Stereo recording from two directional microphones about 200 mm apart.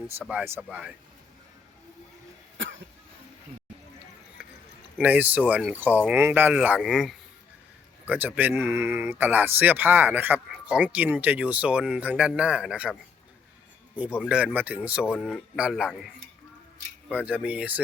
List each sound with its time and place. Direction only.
0.2 s speech: 10° right (ahead or behind)
2.6 s cough: 70° right (ahead or behind)
4.9 s speech: 10° right (ahead or behind)
14.2 s a man's voice: 5° right (ahead or behind)
17.1 s speech: 5° right (ahead or behind)